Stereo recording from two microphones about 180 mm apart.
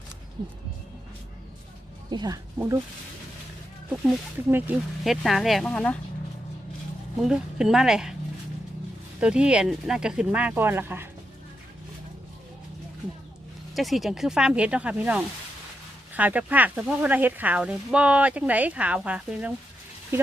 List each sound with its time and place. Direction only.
2.0 s speech: 25° right (ahead or behind)
4.5 s speech: 10° right (ahead or behind)
7.2 s speech: 5° right (ahead or behind)
9.2 s speech: 5° right (ahead or behind)
13.7 s speech: centre (ahead or behind)